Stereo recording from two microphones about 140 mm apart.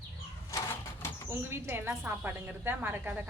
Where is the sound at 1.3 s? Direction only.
15° right (ahead or behind).